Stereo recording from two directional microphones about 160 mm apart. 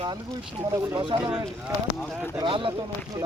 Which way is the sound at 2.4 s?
30° right (ahead or behind).